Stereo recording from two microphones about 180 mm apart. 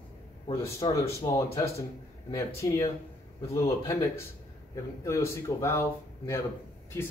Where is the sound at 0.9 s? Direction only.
20° left (ahead or behind).